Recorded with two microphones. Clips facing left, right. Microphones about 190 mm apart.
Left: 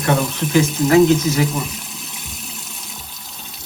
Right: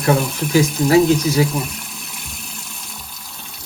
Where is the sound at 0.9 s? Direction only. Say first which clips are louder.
Left 1 dB; 35° right (ahead or behind).